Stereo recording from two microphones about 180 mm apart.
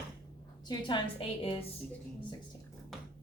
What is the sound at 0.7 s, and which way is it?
Speech, 25° left (ahead or behind).